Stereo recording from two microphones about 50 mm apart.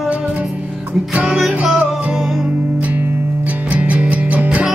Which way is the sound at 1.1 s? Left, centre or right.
Right.